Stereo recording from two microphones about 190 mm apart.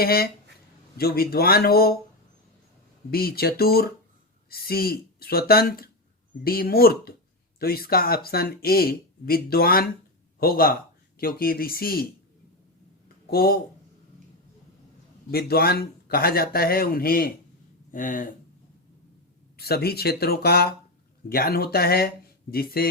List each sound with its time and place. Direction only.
0.0 s speech: 55° left (ahead or behind)
3.1 s speech: 55° left (ahead or behind)
13.2 s speech: 55° left (ahead or behind)
15.3 s speech: 55° left (ahead or behind)
19.5 s speech: 55° left (ahead or behind)